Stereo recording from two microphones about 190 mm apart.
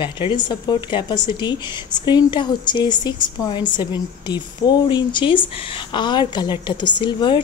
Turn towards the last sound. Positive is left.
turn(degrees=25)  # may be behind; listen again after turning